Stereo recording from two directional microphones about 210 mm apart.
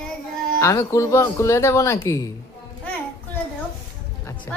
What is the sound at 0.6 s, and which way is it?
Speech, 15° left (ahead or behind).